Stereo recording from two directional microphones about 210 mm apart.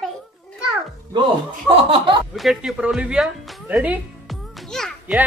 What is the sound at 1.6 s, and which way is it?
Laughter, 25° right (ahead or behind).